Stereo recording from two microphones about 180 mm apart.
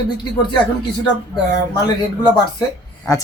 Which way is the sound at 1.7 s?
20° left (ahead or behind).